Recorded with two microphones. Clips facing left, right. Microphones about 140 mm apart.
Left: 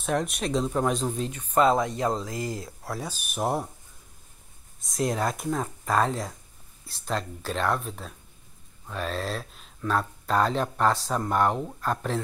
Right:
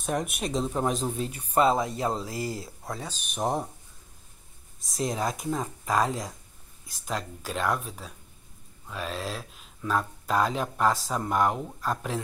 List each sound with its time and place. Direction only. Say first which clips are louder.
0.0 s speech: left 2 dB; centre (ahead or behind)
2.3 s speech: left 1 dB; 45° left (ahead or behind)
2.8 s speech: left 2 dB; 5° left (ahead or behind)
4.7 s speech: left 3 dB; centre (ahead or behind)